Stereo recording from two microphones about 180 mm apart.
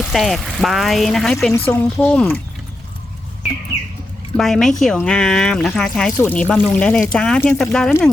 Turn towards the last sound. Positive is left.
turn(degrees=5)  # may be behind; listen again after turning